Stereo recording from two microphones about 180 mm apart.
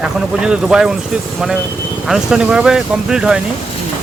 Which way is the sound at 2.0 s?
5° right (ahead or behind).